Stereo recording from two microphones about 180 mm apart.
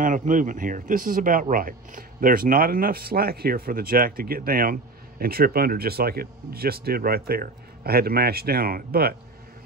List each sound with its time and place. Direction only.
0.0 s speech: 45° right (ahead or behind)